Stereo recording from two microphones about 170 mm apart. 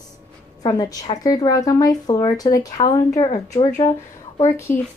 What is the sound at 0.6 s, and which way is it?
A woman's voice, 25° left (ahead or behind).